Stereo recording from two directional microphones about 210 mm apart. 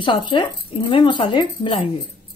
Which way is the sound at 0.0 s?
25° left (ahead or behind).